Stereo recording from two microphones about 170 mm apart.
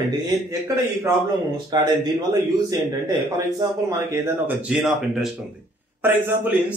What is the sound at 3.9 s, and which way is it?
A man's voice, 15° right (ahead or behind).